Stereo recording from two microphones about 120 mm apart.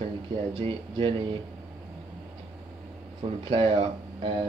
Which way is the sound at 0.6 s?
45° right (ahead or behind).